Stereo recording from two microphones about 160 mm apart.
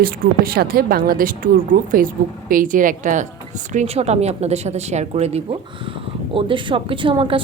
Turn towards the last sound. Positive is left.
turn(degrees=-30)  # may be behind; listen again after turning